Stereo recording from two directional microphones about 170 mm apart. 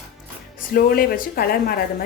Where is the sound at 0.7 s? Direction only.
60° left (ahead or behind).